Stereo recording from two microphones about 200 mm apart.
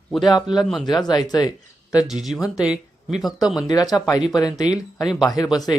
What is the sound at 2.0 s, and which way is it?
Speech, centre (ahead or behind).